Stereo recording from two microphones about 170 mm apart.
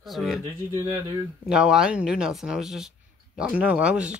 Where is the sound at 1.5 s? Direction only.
5° right (ahead or behind).